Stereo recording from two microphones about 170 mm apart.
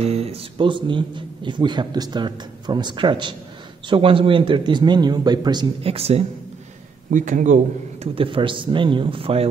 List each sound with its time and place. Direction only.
0.0 s speech: 35° right (ahead or behind)
7.1 s a man's voice: 50° right (ahead or behind); by 9.5 s 35° right (ahead or behind)